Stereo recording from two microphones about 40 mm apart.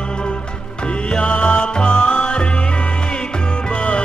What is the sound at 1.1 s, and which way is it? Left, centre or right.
Music, left.